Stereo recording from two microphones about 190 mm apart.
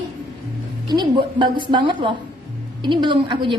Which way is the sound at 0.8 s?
25° right (ahead or behind).